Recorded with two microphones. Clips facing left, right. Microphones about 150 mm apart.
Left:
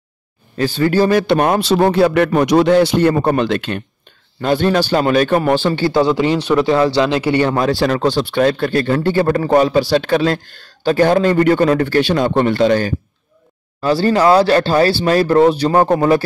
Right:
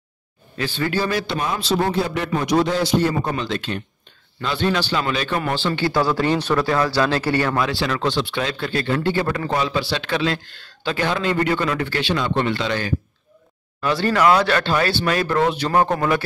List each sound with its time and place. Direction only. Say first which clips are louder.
0.6 s speech: left 9 dB; 40° left (ahead or behind)
1.2 s speech: left 11 dB; 60° left (ahead or behind)
4.4 s speech: left 7 dB; 45° left (ahead or behind)
5.8 s speech: left 6 dB; 25° left (ahead or behind)
6.7 s speech: left 5 dB; 25° left (ahead or behind)
7.5 s speech: left 7 dB; 45° left (ahead or behind)
13.7 s speech: left 5 dB; 35° left (ahead or behind)